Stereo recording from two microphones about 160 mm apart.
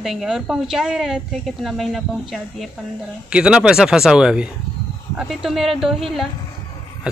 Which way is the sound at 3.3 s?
5° right (ahead or behind).